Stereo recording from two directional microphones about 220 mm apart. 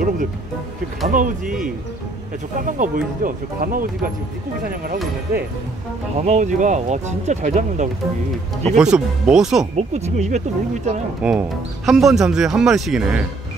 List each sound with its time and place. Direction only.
1.0 s speech: 35° right (ahead or behind)
2.6 s speech: 40° right (ahead or behind)
6.1 s speech: 30° right (ahead or behind)
8.7 s speech: 5° right (ahead or behind)
9.8 s speech: 30° right (ahead or behind)
11.2 s speech: 5° right (ahead or behind)